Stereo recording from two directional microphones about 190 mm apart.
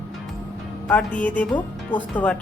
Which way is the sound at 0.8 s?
10° left (ahead or behind).